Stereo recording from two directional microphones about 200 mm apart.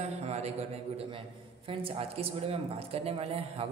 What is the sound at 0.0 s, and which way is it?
A man's voice, 35° right (ahead or behind).